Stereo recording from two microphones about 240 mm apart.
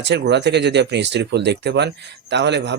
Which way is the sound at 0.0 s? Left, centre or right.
Right.